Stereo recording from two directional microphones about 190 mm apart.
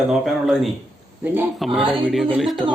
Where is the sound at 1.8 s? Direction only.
25° right (ahead or behind).